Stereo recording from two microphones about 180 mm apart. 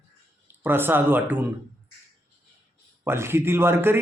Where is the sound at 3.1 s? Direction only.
15° right (ahead or behind).